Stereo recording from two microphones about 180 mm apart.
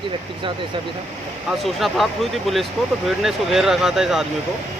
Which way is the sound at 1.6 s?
Centre (ahead or behind).